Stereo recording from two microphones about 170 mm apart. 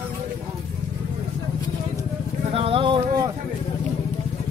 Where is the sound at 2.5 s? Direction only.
35° right (ahead or behind).